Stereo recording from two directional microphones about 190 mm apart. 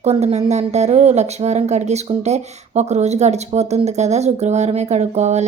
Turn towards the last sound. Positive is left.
turn(degrees=-35)  # may be behind; listen again after turning